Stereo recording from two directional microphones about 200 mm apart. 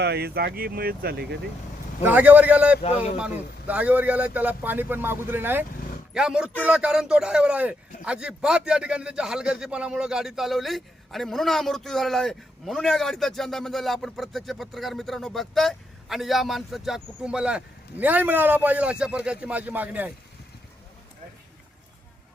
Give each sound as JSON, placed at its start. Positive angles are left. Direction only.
{"t": 0.0, "sound": "speech", "side_deg": -55}
{"t": 2.0, "sound": "a man's voice", "side_deg": -10}